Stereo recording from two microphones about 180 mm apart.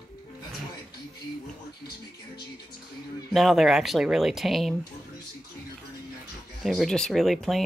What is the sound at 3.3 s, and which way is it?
Speech, centre (ahead or behind).